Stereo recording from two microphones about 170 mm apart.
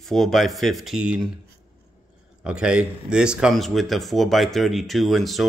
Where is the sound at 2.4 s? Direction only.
5° right (ahead or behind).